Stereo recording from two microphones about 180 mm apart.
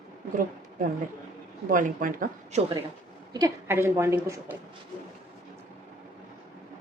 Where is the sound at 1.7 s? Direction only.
50° right (ahead or behind).